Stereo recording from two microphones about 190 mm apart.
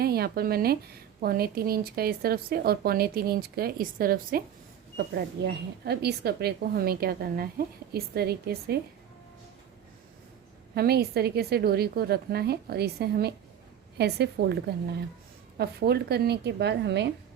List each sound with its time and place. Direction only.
0.0 s a woman's voice: 55° right (ahead or behind)
10.8 s a woman's voice: 55° right (ahead or behind)